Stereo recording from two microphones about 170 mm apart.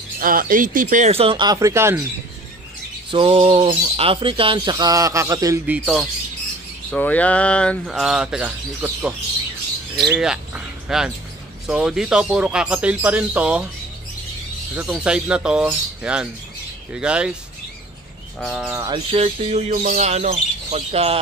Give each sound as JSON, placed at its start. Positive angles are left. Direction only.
{"t": 0.2, "sound": "speech", "side_deg": -55}
{"t": 1.1, "sound": "speech", "side_deg": -35}
{"t": 3.1, "sound": "speech", "side_deg": -30}
{"t": 6.9, "sound": "speech", "side_deg": 10}
{"t": 14.8, "sound": "speech", "side_deg": -5}
{"t": 18.4, "sound": "speech", "side_deg": 0}
{"t": 19.0, "sound": "speech", "side_deg": -35}